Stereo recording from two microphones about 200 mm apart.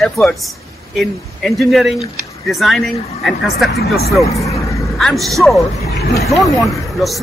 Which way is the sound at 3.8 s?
50° left (ahead or behind).